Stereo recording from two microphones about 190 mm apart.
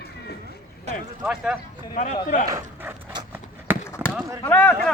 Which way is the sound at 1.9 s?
40° left (ahead or behind).